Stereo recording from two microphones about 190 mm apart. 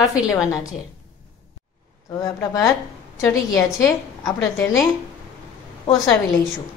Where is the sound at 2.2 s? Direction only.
20° left (ahead or behind).